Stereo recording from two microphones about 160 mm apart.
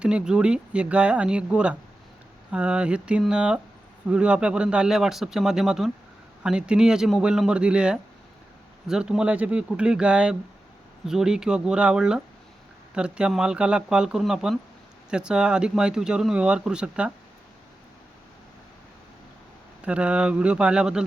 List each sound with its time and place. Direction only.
0.0 s speech: 5° right (ahead or behind)
19.8 s speech: 5° right (ahead or behind)